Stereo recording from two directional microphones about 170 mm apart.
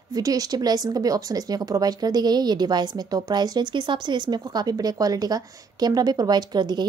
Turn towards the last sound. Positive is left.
turn(degrees=-25)  # may be behind; listen again after turning